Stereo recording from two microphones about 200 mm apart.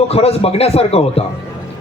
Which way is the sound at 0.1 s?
30° left (ahead or behind).